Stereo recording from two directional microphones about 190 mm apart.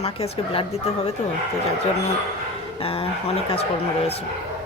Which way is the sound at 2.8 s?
30° left (ahead or behind).